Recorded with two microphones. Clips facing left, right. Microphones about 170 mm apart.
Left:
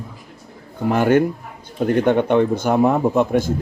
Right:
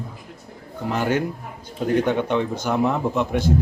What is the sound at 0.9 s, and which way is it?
Speech, 55° left (ahead or behind).